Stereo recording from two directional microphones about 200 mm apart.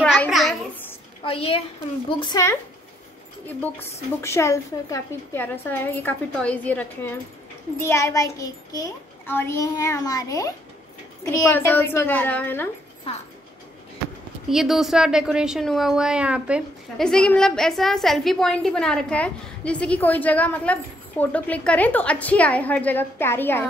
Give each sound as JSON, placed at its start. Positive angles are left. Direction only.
{"t": 0.0, "sound": "a sound", "side_deg": 0}
{"t": 1.2, "sound": "speech", "side_deg": 30}
{"t": 4.2, "sound": "a woman's voice", "side_deg": 15}
{"t": 14.5, "sound": "speech", "side_deg": 0}